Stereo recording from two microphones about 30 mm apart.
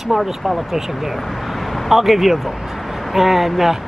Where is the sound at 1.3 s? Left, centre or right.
Centre.